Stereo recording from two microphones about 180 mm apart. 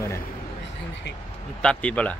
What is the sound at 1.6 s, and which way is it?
Speech, 5° left (ahead or behind).